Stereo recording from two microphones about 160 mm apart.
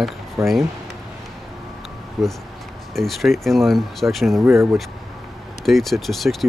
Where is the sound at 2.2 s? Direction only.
Centre (ahead or behind).